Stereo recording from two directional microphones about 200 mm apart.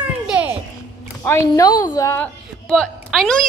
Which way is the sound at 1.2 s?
15° left (ahead or behind).